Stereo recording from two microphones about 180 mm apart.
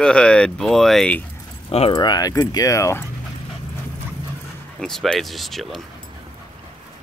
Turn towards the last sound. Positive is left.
turn(degrees=0)  # may be behind; listen again after turning